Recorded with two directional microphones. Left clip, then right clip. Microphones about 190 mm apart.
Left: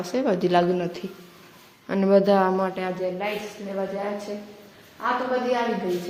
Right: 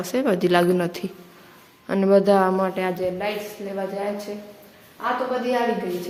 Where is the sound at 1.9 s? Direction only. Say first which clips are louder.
Right 2 dB; 5° right (ahead or behind).